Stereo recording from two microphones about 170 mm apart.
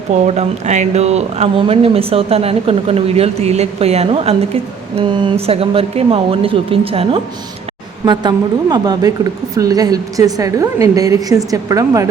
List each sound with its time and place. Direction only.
0.3 s a woman's voice: 40° right (ahead or behind); by 12.0 s 20° right (ahead or behind)